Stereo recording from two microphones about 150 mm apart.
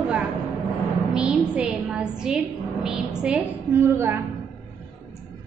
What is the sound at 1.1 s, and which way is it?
Music, 5° right (ahead or behind).